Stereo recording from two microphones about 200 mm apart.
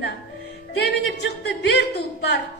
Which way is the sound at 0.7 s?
55° left (ahead or behind).